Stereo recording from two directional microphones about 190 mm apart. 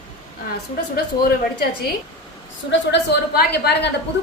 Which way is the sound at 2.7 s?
65° left (ahead or behind).